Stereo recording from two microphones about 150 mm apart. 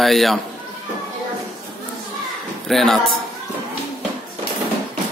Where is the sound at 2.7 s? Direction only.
Centre (ahead or behind).